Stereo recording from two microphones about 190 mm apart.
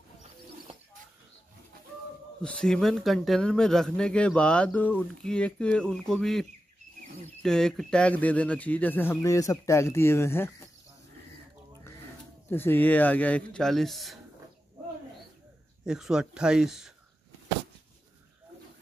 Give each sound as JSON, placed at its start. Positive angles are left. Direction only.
{"t": 2.4, "sound": "speech", "side_deg": 5}
{"t": 7.4, "sound": "speech", "side_deg": 5}
{"t": 12.4, "sound": "speech", "side_deg": 10}
{"t": 15.8, "sound": "speech", "side_deg": -5}